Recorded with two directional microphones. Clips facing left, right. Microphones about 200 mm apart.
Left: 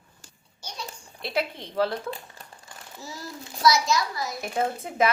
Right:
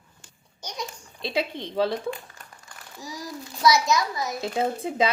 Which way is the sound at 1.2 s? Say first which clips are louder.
Right 1 dB; 20° right (ahead or behind).